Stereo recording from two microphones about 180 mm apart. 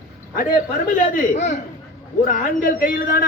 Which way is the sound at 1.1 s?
40° left (ahead or behind).